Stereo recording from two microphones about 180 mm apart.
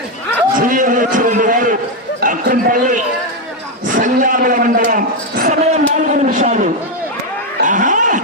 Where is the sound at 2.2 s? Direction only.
50° right (ahead or behind).